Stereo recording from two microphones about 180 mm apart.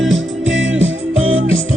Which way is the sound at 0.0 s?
90° right.